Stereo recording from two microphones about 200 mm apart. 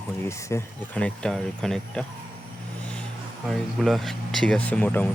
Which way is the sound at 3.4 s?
Centre (ahead or behind).